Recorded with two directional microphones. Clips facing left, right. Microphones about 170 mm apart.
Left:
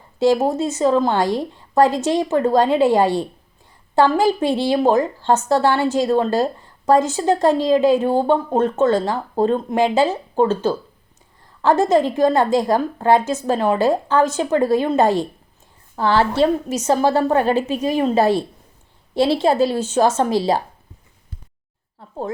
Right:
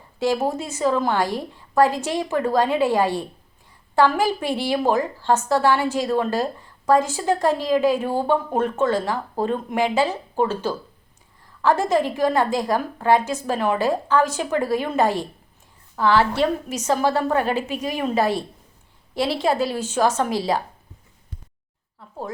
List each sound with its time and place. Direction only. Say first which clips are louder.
0.2 s a woman's voice: left 6 dB; 25° left (ahead or behind)